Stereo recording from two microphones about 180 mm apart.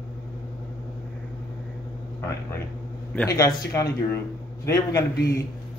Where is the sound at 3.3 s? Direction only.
20° left (ahead or behind).